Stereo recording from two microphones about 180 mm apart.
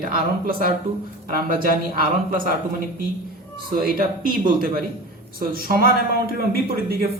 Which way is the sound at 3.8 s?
55° right (ahead or behind).